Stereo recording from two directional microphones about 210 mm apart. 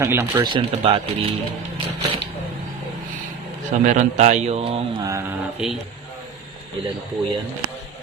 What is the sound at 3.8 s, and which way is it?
A man's voice, 35° right (ahead or behind).